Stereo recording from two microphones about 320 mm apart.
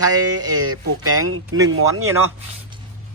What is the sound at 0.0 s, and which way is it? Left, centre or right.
Speech, right.